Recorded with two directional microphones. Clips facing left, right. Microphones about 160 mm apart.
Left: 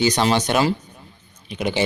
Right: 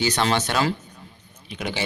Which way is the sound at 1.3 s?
20° left (ahead or behind).